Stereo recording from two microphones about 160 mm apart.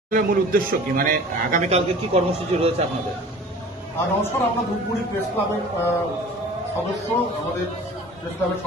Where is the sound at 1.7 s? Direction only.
40° right (ahead or behind).